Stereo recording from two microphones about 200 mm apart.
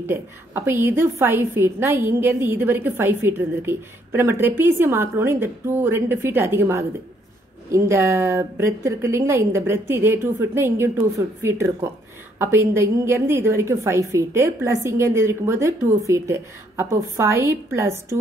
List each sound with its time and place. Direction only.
0.0 s a woman's voice: 10° right (ahead or behind)